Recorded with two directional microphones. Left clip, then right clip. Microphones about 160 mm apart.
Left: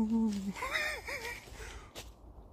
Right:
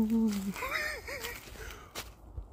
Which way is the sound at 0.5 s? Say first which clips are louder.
Left 2 dB; 20° left (ahead or behind).